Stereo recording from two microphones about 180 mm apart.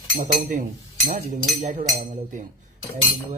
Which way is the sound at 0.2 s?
50° right (ahead or behind).